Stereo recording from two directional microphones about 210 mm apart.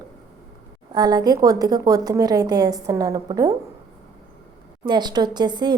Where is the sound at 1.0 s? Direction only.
20° right (ahead or behind).